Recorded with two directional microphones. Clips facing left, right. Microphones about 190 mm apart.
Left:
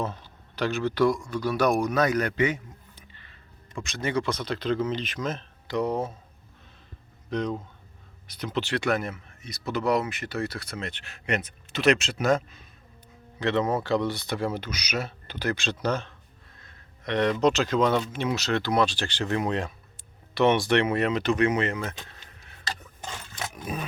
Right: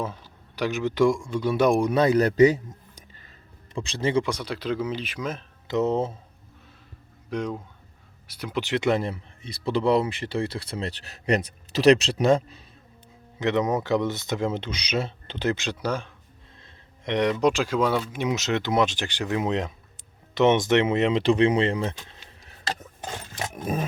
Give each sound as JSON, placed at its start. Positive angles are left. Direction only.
{"t": 0.0, "sound": "speech", "side_deg": -10}
{"t": 3.8, "sound": "speech", "side_deg": -30}
{"t": 4.2, "sound": "speech", "side_deg": -10}
{"t": 5.6, "sound": "speech", "side_deg": -20}
{"t": 7.3, "sound": "speech", "side_deg": -10}
{"t": 13.4, "sound": "speech", "side_deg": -15}
{"t": 16.6, "sound": "a sound", "side_deg": -25}
{"t": 17.3, "sound": "speech", "side_deg": -10}
{"t": 22.3, "sound": "wood", "side_deg": -35}